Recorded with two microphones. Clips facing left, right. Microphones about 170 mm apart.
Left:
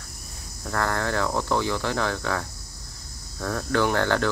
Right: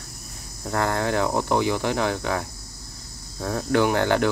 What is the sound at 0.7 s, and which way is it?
Cricket, 20° right (ahead or behind).